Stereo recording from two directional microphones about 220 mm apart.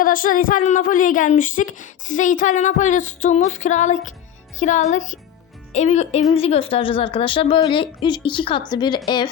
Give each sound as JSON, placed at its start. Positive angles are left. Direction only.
{"t": 0.0, "sound": "a woman's voice", "side_deg": 40}